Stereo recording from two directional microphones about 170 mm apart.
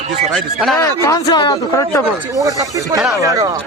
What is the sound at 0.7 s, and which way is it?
Speech, 20° left (ahead or behind).